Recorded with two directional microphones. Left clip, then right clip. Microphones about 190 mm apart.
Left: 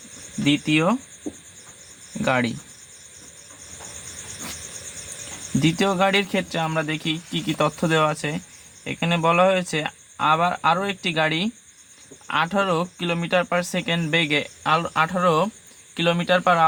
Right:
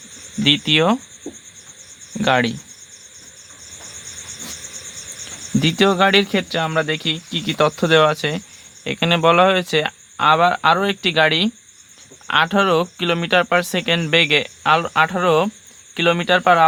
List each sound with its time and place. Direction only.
0.4 s speech: 45° right (ahead or behind)
2.2 s speech: 40° right (ahead or behind)
5.5 s speech: 40° right (ahead or behind)